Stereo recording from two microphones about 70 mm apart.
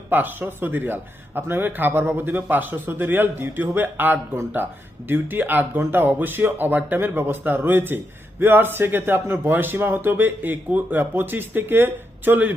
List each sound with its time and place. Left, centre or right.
0.1 s speech: right